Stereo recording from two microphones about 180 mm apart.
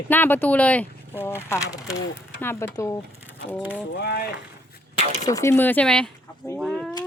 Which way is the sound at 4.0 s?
65° left (ahead or behind).